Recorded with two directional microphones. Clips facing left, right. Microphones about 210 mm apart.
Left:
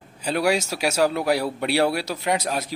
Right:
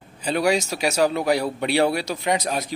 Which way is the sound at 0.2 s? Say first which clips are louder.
Right 1 dB; 5° left (ahead or behind).